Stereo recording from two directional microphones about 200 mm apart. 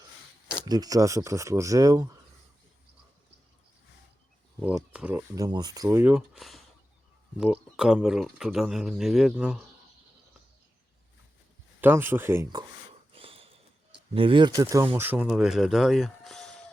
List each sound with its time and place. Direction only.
0.6 s speech: 20° right (ahead or behind)
4.6 s speech: 5° right (ahead or behind)
11.8 s speech: 10° right (ahead or behind)
13.1 s a sound: 25° right (ahead or behind)
14.1 s speech: 25° right (ahead or behind); by 16.6 s centre (ahead or behind)